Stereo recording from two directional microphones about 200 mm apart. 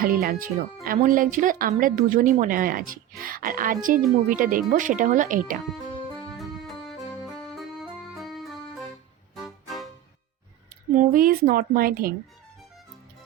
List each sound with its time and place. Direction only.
0.0 s a woman's voice: 50° right (ahead or behind)
6.3 s music: centre (ahead or behind)
10.9 s a woman's voice: 40° right (ahead or behind)